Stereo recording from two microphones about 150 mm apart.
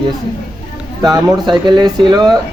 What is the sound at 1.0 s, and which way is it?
Speech, 25° right (ahead or behind).